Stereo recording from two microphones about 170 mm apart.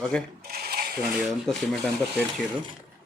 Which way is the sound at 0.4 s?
65° right (ahead or behind).